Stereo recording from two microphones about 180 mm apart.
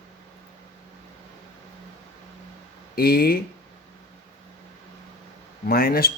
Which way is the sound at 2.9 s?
55° left (ahead or behind).